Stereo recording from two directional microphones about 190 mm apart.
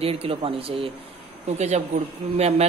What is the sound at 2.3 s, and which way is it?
Speech, 35° right (ahead or behind).